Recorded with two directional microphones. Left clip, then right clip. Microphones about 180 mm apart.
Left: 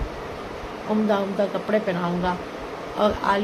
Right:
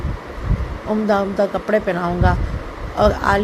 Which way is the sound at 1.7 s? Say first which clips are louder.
Right 5 dB; 35° right (ahead or behind).